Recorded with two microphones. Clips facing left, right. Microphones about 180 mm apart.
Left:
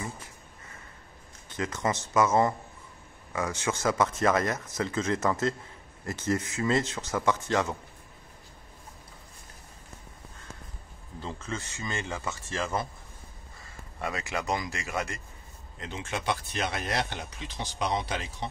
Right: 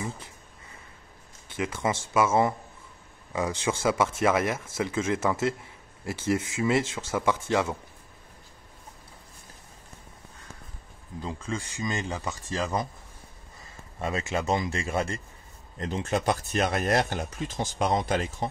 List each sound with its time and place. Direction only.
1.6 s speech: 10° right (ahead or behind)
6.3 s speech: 20° right (ahead or behind)
6.6 s speech: 10° right (ahead or behind)
11.2 s speech: 10° right (ahead or behind)
13.9 s speech: 25° right (ahead or behind)
15.8 s speech: 40° right (ahead or behind)